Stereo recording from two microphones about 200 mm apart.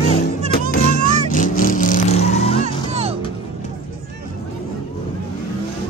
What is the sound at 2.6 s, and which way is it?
Music, 30° right (ahead or behind).